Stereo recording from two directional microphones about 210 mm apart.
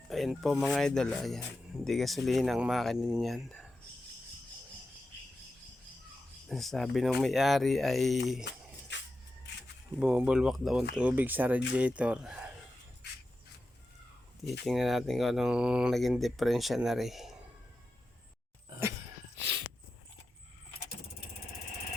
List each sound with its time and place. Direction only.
0.1 s speech: centre (ahead or behind)
6.5 s speech: centre (ahead or behind)
8.5 s speech: 55° left (ahead or behind)
8.9 s a sound: 60° left (ahead or behind)
10.0 s speech: 5° right (ahead or behind)
14.6 s speech: centre (ahead or behind)